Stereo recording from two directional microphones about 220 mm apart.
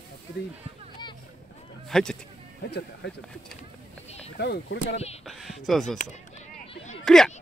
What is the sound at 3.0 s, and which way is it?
Speech, 50° left (ahead or behind).